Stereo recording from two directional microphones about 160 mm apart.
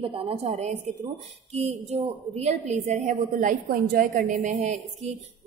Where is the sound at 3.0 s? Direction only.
55° right (ahead or behind).